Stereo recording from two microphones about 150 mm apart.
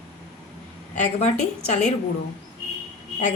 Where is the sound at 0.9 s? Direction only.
55° left (ahead or behind).